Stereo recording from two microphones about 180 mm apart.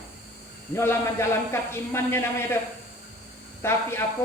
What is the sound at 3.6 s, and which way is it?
Speech, 15° left (ahead or behind).